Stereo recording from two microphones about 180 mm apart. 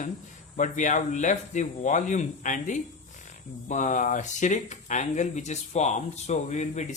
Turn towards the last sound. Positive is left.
turn(degrees=40)  # may be behind; listen again after turning